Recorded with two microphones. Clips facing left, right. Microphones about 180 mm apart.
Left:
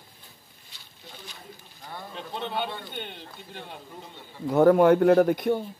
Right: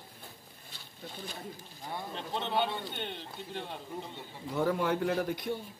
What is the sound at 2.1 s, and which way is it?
A man's voice, 5° left (ahead or behind).